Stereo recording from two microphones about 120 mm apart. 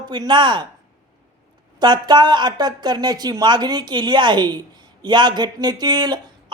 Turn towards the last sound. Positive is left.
turn(degrees=-35)  # may be behind; listen again after turning